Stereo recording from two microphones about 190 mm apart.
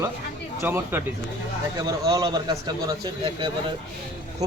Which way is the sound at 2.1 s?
20° right (ahead or behind).